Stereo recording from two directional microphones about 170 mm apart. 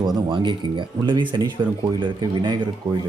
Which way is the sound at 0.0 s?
25° right (ahead or behind).